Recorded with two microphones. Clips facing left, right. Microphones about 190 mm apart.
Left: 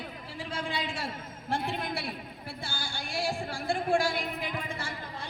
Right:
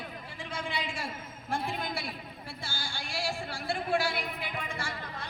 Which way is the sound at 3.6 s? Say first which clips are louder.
Left 3 dB; 45° left (ahead or behind).